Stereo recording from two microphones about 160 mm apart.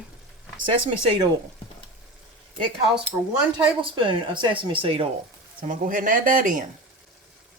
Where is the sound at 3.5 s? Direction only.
35° right (ahead or behind).